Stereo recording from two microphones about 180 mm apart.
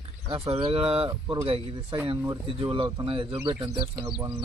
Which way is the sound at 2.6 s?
25° right (ahead or behind).